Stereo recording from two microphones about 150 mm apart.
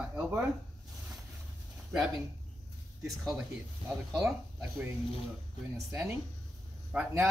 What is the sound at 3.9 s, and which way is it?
Speech, centre (ahead or behind).